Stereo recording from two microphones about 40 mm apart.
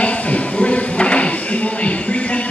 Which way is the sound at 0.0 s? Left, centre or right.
Left.